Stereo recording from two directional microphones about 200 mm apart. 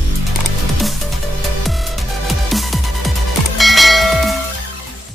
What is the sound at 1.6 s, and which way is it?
Music, centre (ahead or behind).